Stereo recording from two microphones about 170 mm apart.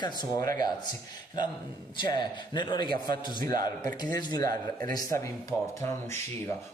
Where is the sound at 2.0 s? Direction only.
25° left (ahead or behind).